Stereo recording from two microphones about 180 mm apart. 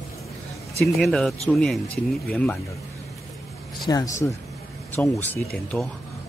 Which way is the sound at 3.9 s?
20° left (ahead or behind).